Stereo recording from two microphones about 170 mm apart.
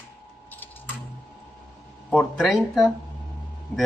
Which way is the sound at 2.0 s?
Centre (ahead or behind).